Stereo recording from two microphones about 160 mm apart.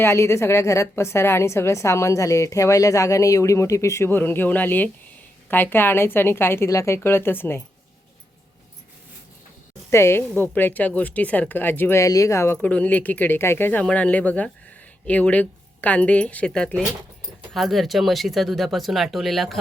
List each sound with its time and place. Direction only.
0.0 s a woman's voice: 15° left (ahead or behind)
9.9 s a woman's voice: 15° left (ahead or behind)